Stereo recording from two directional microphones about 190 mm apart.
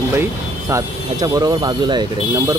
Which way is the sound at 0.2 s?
15° right (ahead or behind).